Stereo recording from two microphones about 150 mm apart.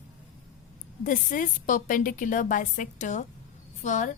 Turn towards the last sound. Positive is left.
turn(degrees=55)  # may be behind; listen again after turning